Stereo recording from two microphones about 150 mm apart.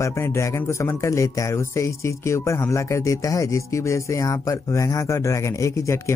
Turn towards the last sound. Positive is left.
turn(degrees=20)  # may be behind; listen again after turning